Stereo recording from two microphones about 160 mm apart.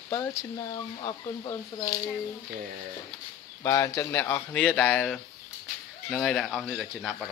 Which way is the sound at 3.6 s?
20° left (ahead or behind).